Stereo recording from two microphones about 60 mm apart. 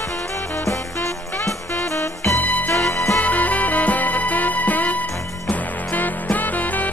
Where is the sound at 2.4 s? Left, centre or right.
Left.